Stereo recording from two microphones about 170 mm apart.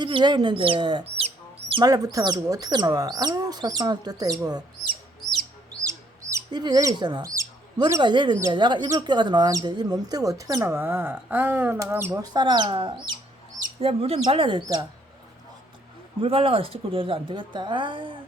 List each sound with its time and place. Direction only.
0.0 s speech: 25° right (ahead or behind)
1.7 s speech: 20° right (ahead or behind)
5.8 s bird: 20° right (ahead or behind)
8.4 s a woman's voice: 25° right (ahead or behind)
16.2 s a woman's voice: 35° right (ahead or behind)